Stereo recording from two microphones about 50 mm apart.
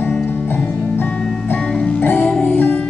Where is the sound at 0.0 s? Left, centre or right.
Left.